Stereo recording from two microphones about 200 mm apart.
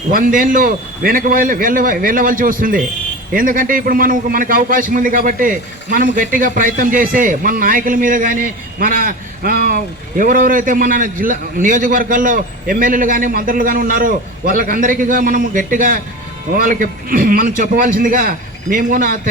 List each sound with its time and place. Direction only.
0.1 s a man's voice: 45° right (ahead or behind)